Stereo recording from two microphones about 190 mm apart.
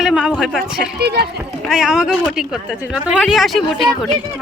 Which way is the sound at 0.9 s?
60° right (ahead or behind).